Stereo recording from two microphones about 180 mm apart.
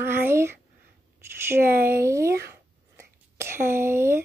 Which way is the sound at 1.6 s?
55° right (ahead or behind).